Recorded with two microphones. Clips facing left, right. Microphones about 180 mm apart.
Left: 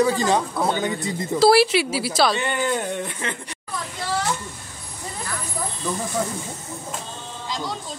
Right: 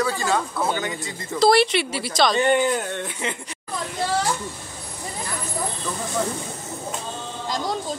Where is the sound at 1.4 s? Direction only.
5° left (ahead or behind).